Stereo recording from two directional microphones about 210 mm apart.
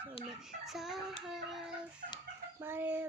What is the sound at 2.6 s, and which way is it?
Speech, 10° right (ahead or behind).